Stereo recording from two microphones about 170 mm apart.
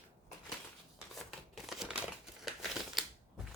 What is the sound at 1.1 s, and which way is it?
Crumpling, centre (ahead or behind).